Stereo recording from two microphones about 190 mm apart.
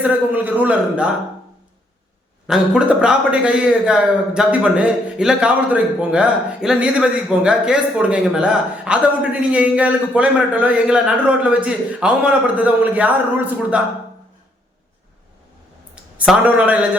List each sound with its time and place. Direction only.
0.0 s a man's voice: 10° right (ahead or behind)
2.5 s a man's voice: 5° right (ahead or behind)
16.1 s a man's voice: 5° right (ahead or behind)